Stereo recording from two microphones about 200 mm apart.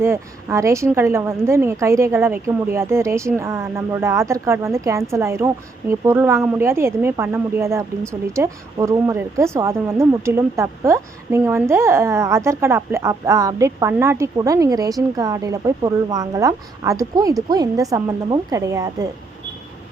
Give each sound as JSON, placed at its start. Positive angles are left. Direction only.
{"t": 0.0, "sound": "speech", "side_deg": -15}